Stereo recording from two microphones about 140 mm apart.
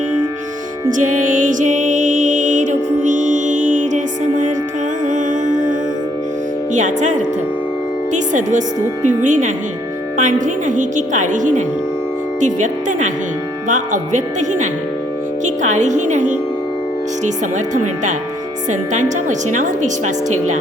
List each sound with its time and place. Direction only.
0.9 s music: 65° right (ahead or behind)
6.7 s a woman's voice: 60° right (ahead or behind)
15.4 s a woman's voice: 60° right (ahead or behind)
18.7 s a woman's voice: 60° right (ahead or behind)